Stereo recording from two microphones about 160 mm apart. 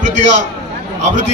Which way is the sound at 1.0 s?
50° right (ahead or behind).